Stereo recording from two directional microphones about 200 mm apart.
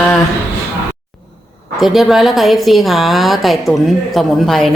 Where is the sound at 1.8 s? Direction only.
Centre (ahead or behind).